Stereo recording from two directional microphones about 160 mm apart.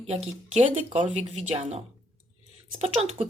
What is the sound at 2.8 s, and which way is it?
Speech, 40° right (ahead or behind).